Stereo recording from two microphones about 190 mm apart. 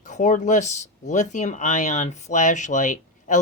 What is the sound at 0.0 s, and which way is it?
Speech, 40° left (ahead or behind).